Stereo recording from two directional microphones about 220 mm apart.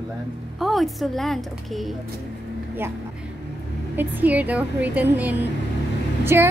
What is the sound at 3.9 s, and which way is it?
A woman's voice, 10° right (ahead or behind).